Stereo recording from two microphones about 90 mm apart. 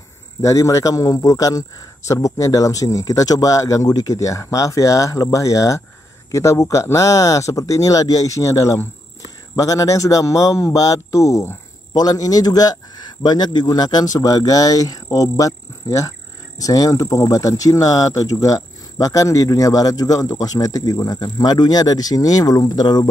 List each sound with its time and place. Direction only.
0.4 s speech: 35° left (ahead or behind)